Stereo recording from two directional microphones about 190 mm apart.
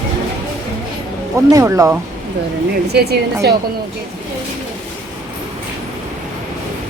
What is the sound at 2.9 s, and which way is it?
Speech, 55° right (ahead or behind).